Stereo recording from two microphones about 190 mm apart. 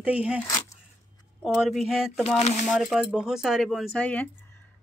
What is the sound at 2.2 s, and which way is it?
Speech, 35° left (ahead or behind).